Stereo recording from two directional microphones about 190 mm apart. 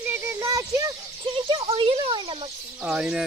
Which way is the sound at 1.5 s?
30° right (ahead or behind).